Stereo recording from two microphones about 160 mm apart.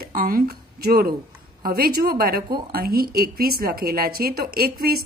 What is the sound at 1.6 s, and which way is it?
A woman's voice, 70° right (ahead or behind).